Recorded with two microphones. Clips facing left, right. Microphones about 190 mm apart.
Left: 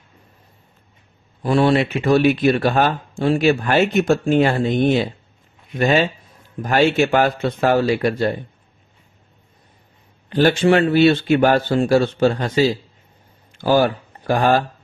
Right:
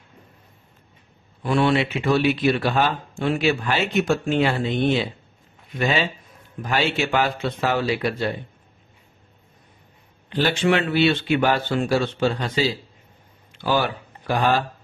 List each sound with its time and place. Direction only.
1.4 s speech: 40° left (ahead or behind)
10.3 s speech: 45° left (ahead or behind)